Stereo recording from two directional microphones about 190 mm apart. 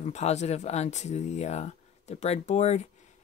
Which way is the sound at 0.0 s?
35° left (ahead or behind).